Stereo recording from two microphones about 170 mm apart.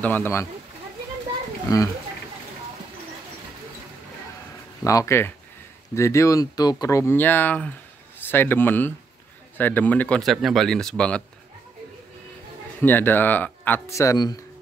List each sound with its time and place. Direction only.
0.0 s speech: 10° left (ahead or behind)
4.8 s speech: 20° left (ahead or behind)
12.8 s speech: 10° left (ahead or behind)